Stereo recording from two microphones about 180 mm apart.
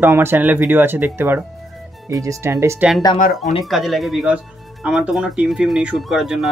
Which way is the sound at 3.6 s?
Centre (ahead or behind).